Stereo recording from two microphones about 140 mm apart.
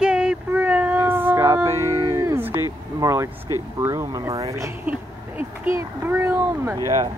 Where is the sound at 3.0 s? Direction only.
20° right (ahead or behind).